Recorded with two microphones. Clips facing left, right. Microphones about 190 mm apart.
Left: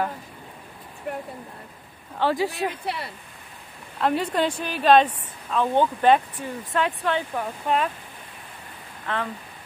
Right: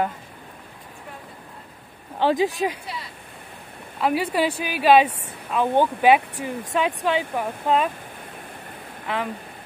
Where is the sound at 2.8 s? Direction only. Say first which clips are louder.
Left 5 dB; 65° left (ahead or behind).